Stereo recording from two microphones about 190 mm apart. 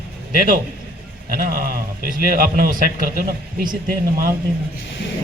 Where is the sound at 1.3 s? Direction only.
50° right (ahead or behind).